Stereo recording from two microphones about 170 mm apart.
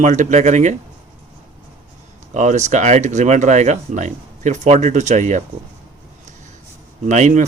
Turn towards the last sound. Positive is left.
turn(degrees=-45)  # may be behind; listen again after turning